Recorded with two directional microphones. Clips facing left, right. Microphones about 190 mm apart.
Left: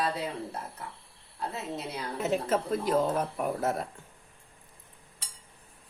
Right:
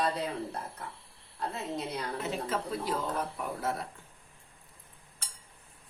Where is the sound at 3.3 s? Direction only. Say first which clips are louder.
Left 5 dB; 50° left (ahead or behind).